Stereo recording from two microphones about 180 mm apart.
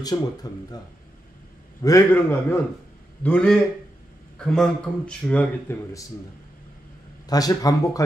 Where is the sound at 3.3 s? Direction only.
5° left (ahead or behind).